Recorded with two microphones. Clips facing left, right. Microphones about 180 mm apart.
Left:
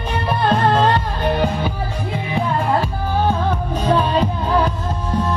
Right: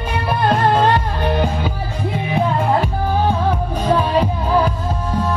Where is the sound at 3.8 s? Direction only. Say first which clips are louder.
Even; 10° right (ahead or behind).